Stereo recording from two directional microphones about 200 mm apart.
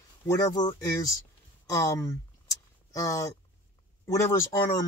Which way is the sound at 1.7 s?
15° left (ahead or behind).